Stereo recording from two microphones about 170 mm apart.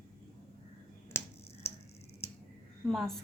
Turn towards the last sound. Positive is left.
turn(degrees=0)  # may be behind; listen again after turning